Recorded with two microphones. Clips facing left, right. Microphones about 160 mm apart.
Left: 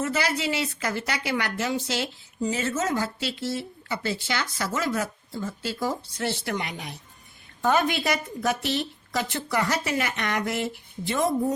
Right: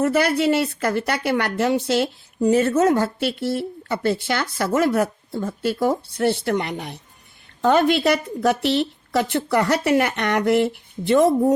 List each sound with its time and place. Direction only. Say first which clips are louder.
0.0 s a woman's voice: right 8 dB; 55° right (ahead or behind)